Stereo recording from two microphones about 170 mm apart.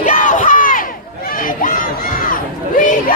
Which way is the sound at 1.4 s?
55° left (ahead or behind).